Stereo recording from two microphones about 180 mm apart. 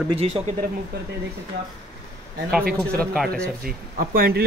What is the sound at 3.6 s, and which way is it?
Speech, 55° right (ahead or behind).